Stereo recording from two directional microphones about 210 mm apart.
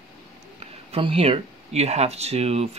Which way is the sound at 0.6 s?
25° right (ahead or behind).